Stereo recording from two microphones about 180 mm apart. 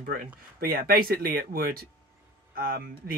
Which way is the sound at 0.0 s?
55° right (ahead or behind).